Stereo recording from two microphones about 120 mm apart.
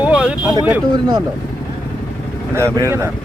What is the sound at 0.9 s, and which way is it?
Speech, 35° right (ahead or behind).